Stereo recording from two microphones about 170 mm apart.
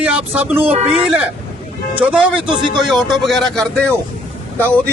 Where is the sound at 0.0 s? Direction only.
10° right (ahead or behind).